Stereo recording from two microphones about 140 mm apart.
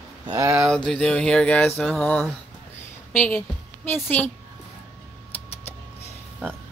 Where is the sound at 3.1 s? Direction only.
5° left (ahead or behind).